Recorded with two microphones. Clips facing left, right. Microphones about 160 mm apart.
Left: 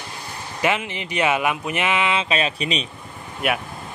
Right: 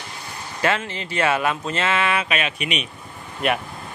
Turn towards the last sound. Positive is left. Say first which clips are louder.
# right 1 dB
turn(degrees=5)  # may be behind; listen again after turning